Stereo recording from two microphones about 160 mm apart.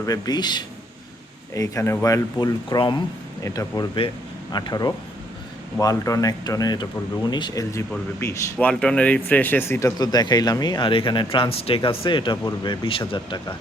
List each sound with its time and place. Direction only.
0.0 s speech: 25° left (ahead or behind)
8.5 s speech: 5° left (ahead or behind); by 13.4 s 30° left (ahead or behind)